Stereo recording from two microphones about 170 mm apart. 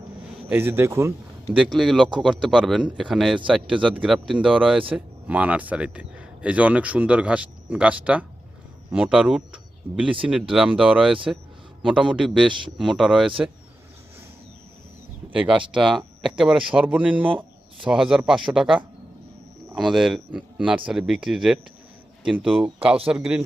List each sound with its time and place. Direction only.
0.4 s speech: 15° right (ahead or behind)
1.5 s speech: 5° right (ahead or behind)
12.5 s a man's voice: 30° right (ahead or behind)
12.8 s speech: centre (ahead or behind)
15.3 s speech: 10° right (ahead or behind)